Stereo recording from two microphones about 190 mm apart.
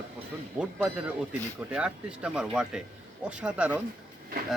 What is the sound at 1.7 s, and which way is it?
Speech, 5° right (ahead or behind).